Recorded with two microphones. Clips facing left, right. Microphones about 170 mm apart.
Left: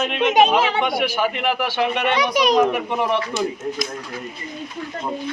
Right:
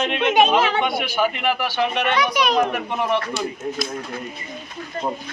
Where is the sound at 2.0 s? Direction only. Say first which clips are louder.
Left 2 dB; 20° left (ahead or behind).